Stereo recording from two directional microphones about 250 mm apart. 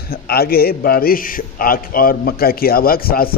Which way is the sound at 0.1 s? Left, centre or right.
Left.